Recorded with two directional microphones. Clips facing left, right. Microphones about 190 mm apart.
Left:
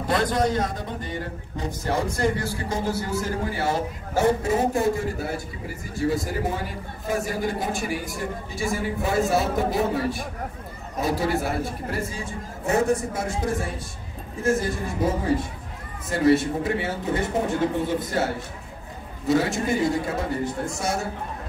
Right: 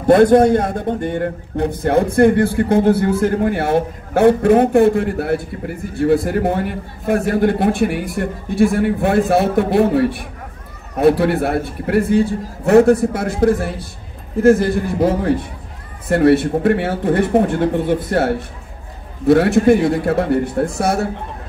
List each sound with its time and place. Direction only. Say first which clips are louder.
0.0 s a man's voice: right 13 dB; 60° right (ahead or behind)